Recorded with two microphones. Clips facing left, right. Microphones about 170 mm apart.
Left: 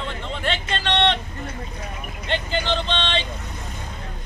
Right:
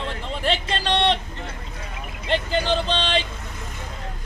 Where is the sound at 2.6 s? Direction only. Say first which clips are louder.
Right 2 dB; 5° right (ahead or behind).